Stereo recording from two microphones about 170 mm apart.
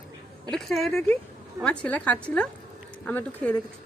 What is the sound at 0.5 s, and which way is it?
A woman's voice, centre (ahead or behind).